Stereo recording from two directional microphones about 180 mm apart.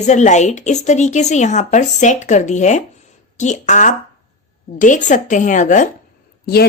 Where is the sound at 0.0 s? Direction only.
40° left (ahead or behind).